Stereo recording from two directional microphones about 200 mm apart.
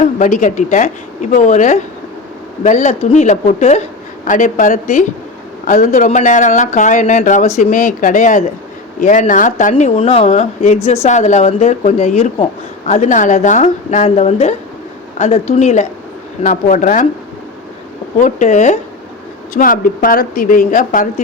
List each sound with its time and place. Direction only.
0.0 s speech: 40° left (ahead or behind)
18.2 s a woman's voice: 35° left (ahead or behind)